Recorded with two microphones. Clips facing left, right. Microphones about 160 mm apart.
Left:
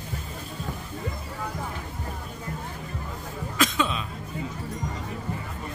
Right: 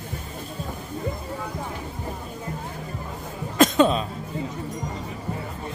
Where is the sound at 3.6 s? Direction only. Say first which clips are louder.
Right 8 dB; 40° right (ahead or behind).